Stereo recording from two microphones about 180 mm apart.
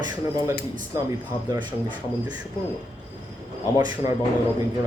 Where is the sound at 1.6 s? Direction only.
25° right (ahead or behind).